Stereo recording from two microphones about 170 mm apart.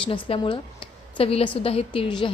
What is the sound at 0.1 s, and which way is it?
A woman's voice, 30° left (ahead or behind).